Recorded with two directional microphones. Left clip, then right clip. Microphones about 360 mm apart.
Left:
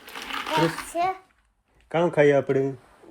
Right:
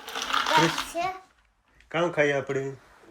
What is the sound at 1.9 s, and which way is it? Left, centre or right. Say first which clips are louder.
Speech: left 5 dB; centre.